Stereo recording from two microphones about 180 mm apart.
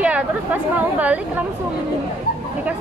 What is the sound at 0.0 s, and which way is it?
Speech, 10° right (ahead or behind).